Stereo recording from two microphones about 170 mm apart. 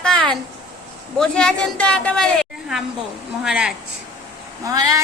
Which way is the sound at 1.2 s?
5° left (ahead or behind).